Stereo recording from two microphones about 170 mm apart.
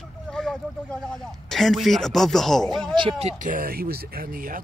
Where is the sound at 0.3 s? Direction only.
5° left (ahead or behind).